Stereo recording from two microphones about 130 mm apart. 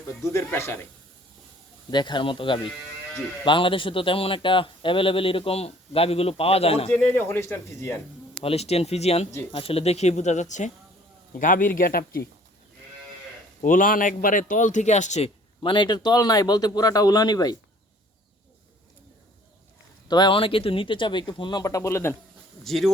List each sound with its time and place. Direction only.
0.3 s speech: 20° left (ahead or behind)
1.9 s speech: 35° left (ahead or behind)
6.9 s speech: 10° left (ahead or behind)
8.4 s speech: 50° left (ahead or behind); by 10.7 s 65° left (ahead or behind)
11.3 s a man's voice: 90° left
13.6 s a man's voice: 90° left; by 15.3 s 65° left (ahead or behind)
15.6 s speech: 35° left (ahead or behind)
20.1 s speech: 35° left (ahead or behind)
22.6 s speech: centre (ahead or behind)